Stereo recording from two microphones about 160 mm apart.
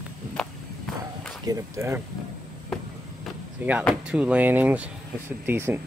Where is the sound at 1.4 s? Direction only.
20° right (ahead or behind).